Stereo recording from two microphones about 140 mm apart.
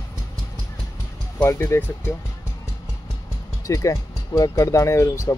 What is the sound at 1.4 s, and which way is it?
Speech, 20° left (ahead or behind).